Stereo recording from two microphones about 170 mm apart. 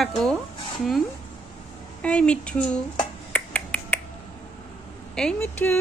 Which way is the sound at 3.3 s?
5° left (ahead or behind).